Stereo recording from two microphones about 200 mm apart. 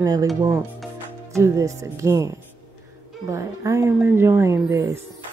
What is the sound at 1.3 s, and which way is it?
Speech, 15° right (ahead or behind).